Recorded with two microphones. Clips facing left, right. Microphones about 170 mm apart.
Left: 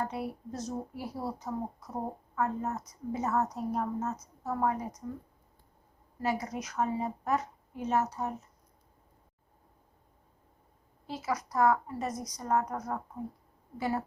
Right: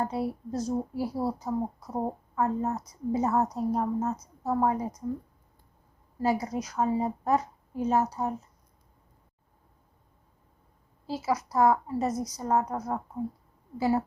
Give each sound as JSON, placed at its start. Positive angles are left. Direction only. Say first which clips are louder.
{"t": 0.0, "sound": "speech", "louder": "right 5 dB", "side_deg": -30}
{"t": 6.2, "sound": "speech", "louder": "right 5 dB", "side_deg": -30}
{"t": 11.0, "sound": "a woman's voice", "louder": "right 5 dB", "side_deg": -30}